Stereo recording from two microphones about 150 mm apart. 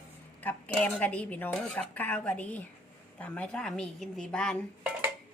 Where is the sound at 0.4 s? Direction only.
10° left (ahead or behind).